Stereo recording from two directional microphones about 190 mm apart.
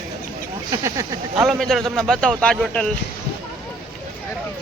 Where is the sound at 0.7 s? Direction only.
15° right (ahead or behind).